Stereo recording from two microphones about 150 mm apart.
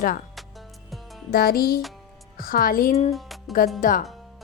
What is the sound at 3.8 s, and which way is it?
Speech, 65° left (ahead or behind).